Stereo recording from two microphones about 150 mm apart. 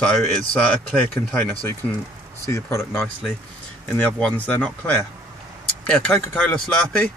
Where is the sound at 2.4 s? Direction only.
20° left (ahead or behind).